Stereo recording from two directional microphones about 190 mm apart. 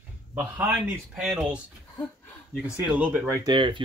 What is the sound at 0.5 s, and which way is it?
Speech, 10° right (ahead or behind).